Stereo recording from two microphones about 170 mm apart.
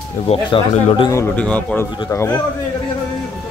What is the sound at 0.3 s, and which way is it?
Speech, 30° left (ahead or behind).